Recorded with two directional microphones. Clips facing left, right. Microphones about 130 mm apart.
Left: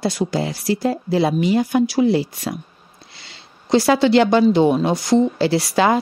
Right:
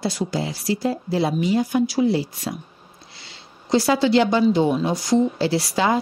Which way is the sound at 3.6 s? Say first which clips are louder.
Left 3 dB; 65° left (ahead or behind).